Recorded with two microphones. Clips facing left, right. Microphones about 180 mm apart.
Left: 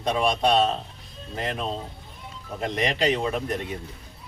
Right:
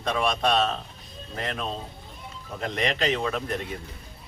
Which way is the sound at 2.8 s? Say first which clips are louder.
Left 2 dB; 15° left (ahead or behind).